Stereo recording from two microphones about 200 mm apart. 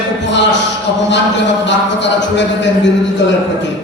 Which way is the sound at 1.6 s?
60° left (ahead or behind).